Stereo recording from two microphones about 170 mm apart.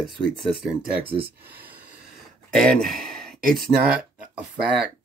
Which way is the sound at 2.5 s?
5° left (ahead or behind).